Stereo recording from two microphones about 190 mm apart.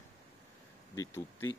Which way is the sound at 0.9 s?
15° left (ahead or behind).